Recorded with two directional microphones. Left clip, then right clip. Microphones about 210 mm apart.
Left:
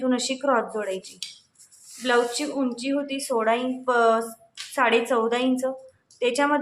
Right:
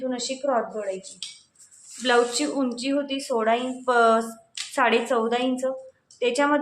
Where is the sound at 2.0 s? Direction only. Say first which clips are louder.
Right 1 dB; 10° right (ahead or behind).